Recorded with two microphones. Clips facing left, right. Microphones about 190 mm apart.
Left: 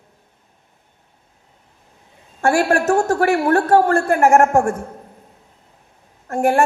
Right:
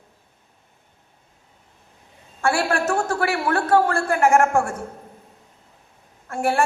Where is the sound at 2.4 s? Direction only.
40° left (ahead or behind).